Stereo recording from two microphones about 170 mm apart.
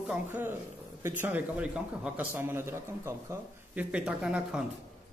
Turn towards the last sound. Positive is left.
turn(degrees=-5)  # may be behind; listen again after turning